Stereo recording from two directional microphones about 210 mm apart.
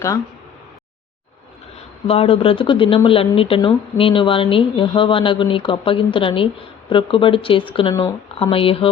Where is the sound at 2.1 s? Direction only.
25° left (ahead or behind).